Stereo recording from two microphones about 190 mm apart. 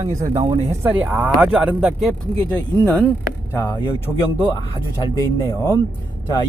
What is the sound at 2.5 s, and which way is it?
Speech, 5° left (ahead or behind).